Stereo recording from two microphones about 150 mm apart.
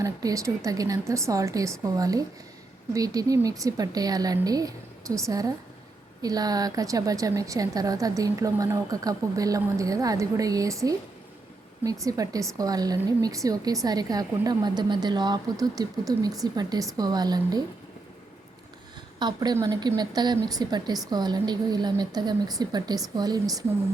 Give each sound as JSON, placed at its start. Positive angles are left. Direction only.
{"t": 0.0, "sound": "a woman's voice", "side_deg": -25}
{"t": 19.2, "sound": "a woman's voice", "side_deg": -30}